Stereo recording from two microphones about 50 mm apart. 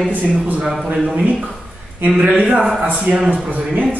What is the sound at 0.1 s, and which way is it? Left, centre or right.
A man's voice, right.